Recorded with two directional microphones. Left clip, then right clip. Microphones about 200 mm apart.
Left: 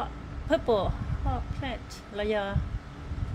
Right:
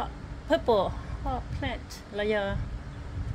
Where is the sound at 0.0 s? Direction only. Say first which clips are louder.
Even; 25° right (ahead or behind).